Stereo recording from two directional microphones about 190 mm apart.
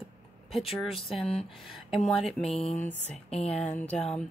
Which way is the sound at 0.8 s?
Centre (ahead or behind).